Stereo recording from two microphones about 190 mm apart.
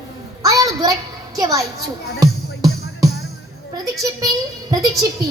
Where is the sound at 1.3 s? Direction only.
20° right (ahead or behind).